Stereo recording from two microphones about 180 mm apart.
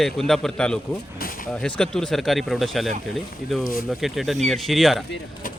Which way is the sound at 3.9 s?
Centre (ahead or behind).